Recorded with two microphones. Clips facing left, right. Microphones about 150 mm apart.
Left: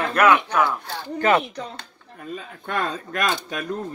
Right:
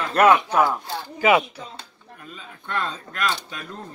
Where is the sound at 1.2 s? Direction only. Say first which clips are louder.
Right 1 dB; 10° right (ahead or behind).